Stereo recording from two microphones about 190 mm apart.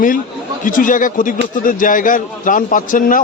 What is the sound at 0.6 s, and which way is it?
A man's voice, 45° left (ahead or behind).